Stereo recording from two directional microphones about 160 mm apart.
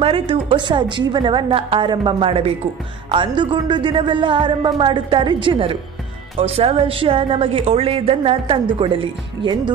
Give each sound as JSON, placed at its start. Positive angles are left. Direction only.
{"t": 0.0, "sound": "a woman's voice", "side_deg": -35}